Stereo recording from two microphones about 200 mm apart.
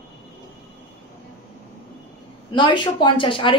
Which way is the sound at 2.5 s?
25° left (ahead or behind).